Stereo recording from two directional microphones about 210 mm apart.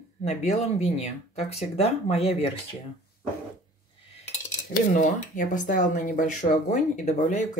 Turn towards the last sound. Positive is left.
turn(degrees=35)  # may be behind; listen again after turning